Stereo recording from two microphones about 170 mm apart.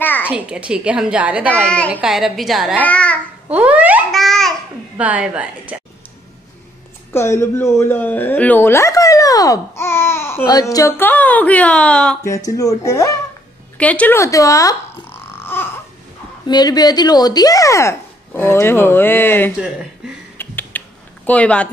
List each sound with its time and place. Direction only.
0.2 s a woman's voice: 10° right (ahead or behind); by 3.2 s 10° left (ahead or behind)
3.4 s babbling: 10° right (ahead or behind)
4.1 s babbling: centre (ahead or behind)
5.0 s a woman's voice: 10° right (ahead or behind)
7.1 s speech: 15° left (ahead or behind)
12.4 s a woman's voice: 20° left (ahead or behind)
13.7 s dog: 10° left (ahead or behind)
16.4 s a woman's voice: 25° left (ahead or behind)
20.3 s typing: 10° left (ahead or behind)
21.3 s speech: 5° left (ahead or behind)